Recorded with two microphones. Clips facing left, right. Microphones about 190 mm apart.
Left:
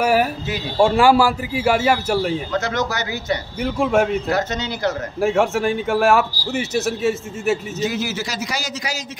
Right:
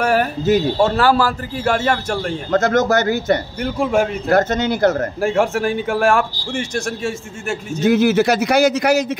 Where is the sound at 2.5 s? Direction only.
50° right (ahead or behind).